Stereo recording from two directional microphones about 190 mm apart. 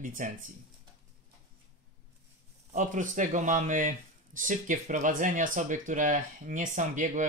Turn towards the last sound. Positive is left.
turn(degrees=-40)  # may be behind; listen again after turning